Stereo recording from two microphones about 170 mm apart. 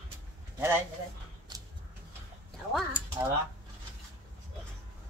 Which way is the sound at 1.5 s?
25° right (ahead or behind).